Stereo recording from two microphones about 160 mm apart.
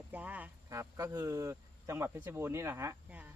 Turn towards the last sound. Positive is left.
turn(degrees=-10)  # may be behind; listen again after turning